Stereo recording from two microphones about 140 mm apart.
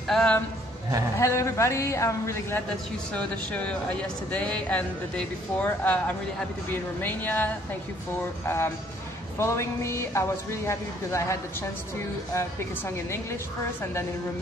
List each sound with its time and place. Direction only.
0.1 s speech: 5° left (ahead or behind)
1.1 s a man's voice: 20° left (ahead or behind)
3.2 s a man's voice: 10° left (ahead or behind)
12.4 s speech: 20° left (ahead or behind)